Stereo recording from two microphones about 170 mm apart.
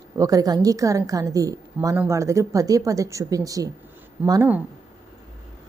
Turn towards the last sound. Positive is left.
turn(degrees=-10)  # may be behind; listen again after turning